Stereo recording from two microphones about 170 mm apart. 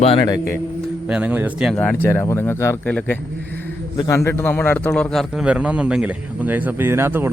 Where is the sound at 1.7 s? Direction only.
10° left (ahead or behind).